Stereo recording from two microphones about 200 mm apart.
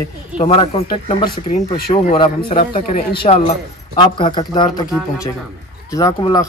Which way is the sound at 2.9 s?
50° left (ahead or behind).